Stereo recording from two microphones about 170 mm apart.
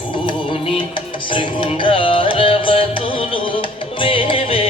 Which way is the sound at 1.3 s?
30° left (ahead or behind).